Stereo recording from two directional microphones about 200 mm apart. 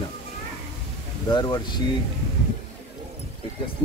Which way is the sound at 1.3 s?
25° left (ahead or behind).